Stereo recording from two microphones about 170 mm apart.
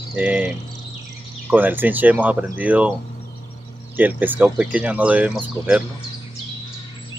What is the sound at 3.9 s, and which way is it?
Speech, 10° right (ahead or behind).